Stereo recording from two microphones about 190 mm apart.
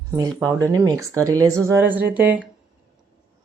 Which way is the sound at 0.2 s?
15° right (ahead or behind).